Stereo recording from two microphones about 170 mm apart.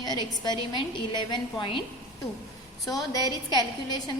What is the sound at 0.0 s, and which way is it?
A woman's voice, 25° left (ahead or behind).